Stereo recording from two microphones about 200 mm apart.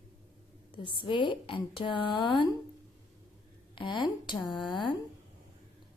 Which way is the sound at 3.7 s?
25° left (ahead or behind).